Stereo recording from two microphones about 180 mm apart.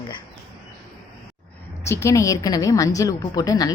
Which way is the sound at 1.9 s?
15° left (ahead or behind).